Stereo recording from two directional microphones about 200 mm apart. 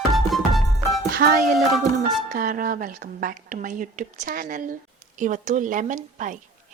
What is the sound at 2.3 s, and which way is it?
A woman's voice, 45° right (ahead or behind).